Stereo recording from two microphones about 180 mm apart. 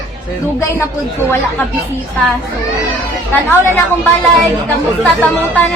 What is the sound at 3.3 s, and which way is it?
Speech, 10° left (ahead or behind).